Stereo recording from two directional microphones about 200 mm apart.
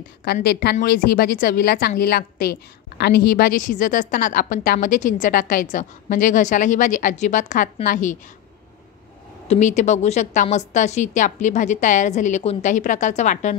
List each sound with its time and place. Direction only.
0.2 s a woman's voice: 55° left (ahead or behind); by 8.2 s 40° left (ahead or behind)
9.5 s a woman's voice: 35° left (ahead or behind)